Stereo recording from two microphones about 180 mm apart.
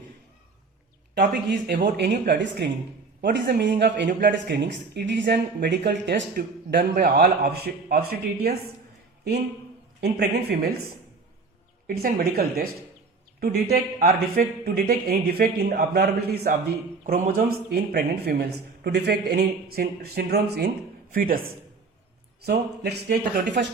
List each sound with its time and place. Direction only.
1.3 s speech: 65° right (ahead or behind)
3.7 s speech: 50° right (ahead or behind)
3.9 s speech: 75° right (ahead or behind); by 8.5 s 55° right (ahead or behind)
10.0 s speech: 65° right (ahead or behind)
12.0 s speech: 60° right (ahead or behind)
21.1 s speech: 50° right (ahead or behind)
22.4 s speech: 65° right (ahead or behind)